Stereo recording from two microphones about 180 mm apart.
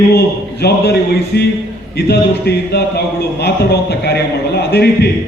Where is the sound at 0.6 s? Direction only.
65° left (ahead or behind).